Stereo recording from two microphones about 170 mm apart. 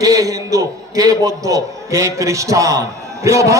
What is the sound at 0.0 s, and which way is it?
A man's voice, 20° right (ahead or behind).